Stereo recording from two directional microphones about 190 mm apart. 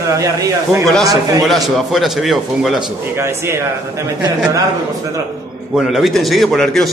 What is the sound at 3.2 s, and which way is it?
Speech, 15° right (ahead or behind).